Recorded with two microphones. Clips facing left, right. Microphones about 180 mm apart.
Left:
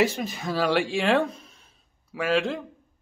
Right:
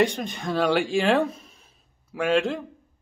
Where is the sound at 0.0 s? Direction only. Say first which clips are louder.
Right 1 dB; 5° left (ahead or behind).